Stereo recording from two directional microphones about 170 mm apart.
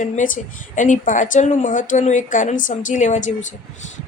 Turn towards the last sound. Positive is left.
turn(degrees=45)  # may be behind; listen again after turning